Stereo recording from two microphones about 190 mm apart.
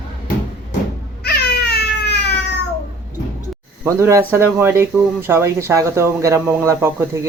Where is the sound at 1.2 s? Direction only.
55° left (ahead or behind).